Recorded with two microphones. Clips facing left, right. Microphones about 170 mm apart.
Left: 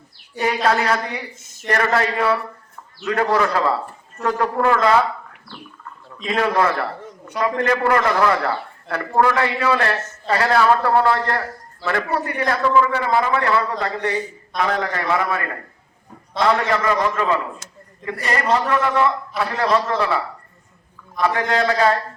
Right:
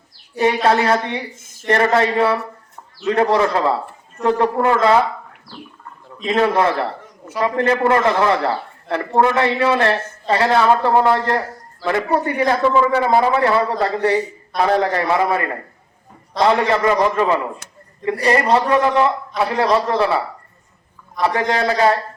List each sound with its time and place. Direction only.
0.4 s a man's voice: 25° right (ahead or behind)
6.2 s a man's voice: 25° right (ahead or behind)
16.4 s a man's voice: 25° right (ahead or behind)
18.0 s a man's voice: 25° right (ahead or behind)
21.2 s a man's voice: 25° right (ahead or behind)